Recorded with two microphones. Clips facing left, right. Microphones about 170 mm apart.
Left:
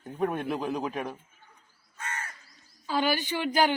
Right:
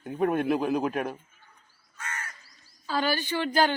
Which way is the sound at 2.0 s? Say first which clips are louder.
Left 1 dB; 25° left (ahead or behind).